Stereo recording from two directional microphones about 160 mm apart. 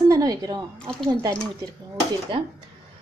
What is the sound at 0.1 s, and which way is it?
Speech, 25° right (ahead or behind).